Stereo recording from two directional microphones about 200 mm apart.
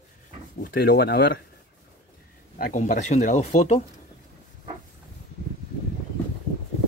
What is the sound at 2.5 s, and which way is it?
Speech, 40° left (ahead or behind).